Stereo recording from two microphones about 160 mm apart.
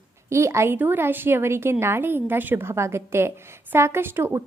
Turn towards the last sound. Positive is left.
turn(degrees=-15)  # may be behind; listen again after turning